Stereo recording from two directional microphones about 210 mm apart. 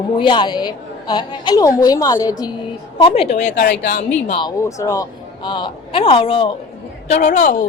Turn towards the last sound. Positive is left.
turn(degrees=35)  # may be behind; listen again after turning